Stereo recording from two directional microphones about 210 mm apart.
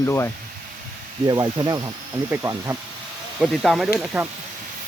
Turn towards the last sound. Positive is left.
turn(degrees=-10)  # may be behind; listen again after turning